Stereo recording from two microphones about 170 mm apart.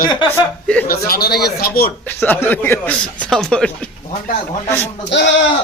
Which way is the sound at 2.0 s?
10° left (ahead or behind).